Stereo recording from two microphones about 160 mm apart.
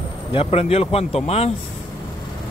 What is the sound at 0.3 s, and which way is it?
Speech, 40° left (ahead or behind).